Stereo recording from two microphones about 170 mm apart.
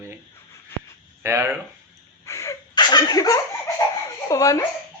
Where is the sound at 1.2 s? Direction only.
15° right (ahead or behind).